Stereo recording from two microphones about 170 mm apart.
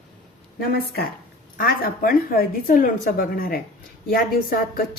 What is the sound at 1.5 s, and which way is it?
Speech, 60° left (ahead or behind).